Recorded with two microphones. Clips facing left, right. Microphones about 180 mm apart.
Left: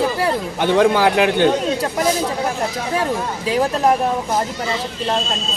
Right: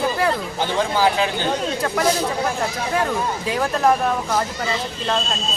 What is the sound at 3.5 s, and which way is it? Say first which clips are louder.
Speech: left 3 dB; 20° left (ahead or behind).